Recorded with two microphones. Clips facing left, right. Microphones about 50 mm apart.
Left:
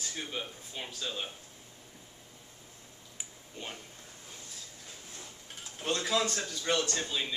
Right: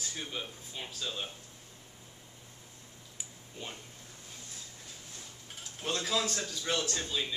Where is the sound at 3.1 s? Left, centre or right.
Centre.